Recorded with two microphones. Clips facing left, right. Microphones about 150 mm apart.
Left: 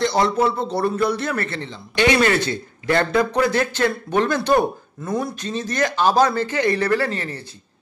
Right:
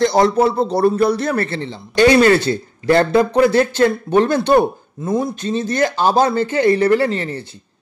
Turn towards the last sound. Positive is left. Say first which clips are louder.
# right 5 dB
turn(degrees=-25)  # may be behind; listen again after turning